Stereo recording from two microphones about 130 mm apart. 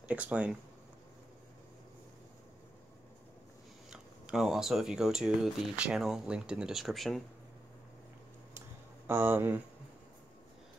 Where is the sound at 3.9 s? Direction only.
5° right (ahead or behind).